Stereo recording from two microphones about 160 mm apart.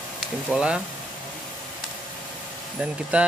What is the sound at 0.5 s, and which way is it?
Speech, 5° right (ahead or behind).